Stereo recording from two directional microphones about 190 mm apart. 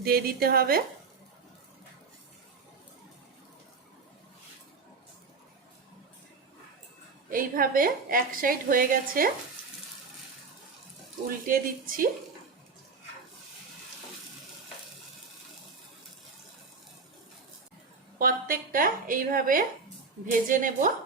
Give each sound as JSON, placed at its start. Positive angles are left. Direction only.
{"t": 0.0, "sound": "a woman's voice", "side_deg": -50}
{"t": 7.3, "sound": "a woman's voice", "side_deg": -50}
{"t": 11.3, "sound": "a woman's voice", "side_deg": -45}
{"t": 18.2, "sound": "a woman's voice", "side_deg": -50}